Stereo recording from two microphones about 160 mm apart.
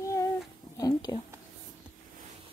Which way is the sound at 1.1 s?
30° left (ahead or behind).